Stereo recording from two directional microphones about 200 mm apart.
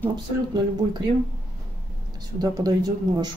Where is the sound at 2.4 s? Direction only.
15° right (ahead or behind).